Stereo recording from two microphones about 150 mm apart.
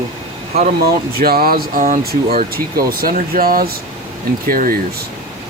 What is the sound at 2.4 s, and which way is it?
Speech, 85° right.